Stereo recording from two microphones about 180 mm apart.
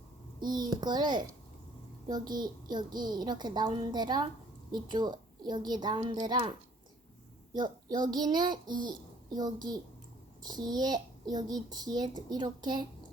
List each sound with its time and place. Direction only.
0.3 s a child's voice: 25° right (ahead or behind)
7.5 s a child's voice: 25° right (ahead or behind)